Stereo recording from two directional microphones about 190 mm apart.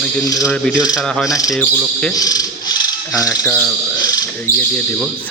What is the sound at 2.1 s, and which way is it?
Speech, 20° left (ahead or behind).